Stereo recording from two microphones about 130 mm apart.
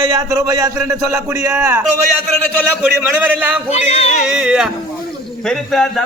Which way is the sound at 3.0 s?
10° right (ahead or behind).